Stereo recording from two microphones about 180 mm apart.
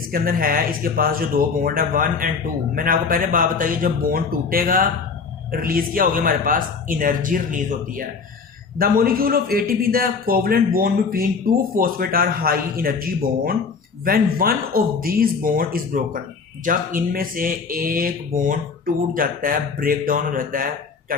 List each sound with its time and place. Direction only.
0.1 s a man's voice: 55° right (ahead or behind)